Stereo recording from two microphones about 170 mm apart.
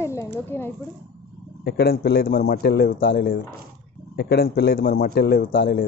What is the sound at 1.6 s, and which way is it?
Speech, 65° left (ahead or behind).